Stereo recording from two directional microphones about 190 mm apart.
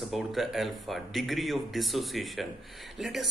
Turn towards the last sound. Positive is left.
turn(degrees=0)  # may be behind; listen again after turning